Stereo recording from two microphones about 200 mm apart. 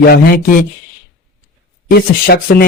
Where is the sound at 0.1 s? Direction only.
50° left (ahead or behind).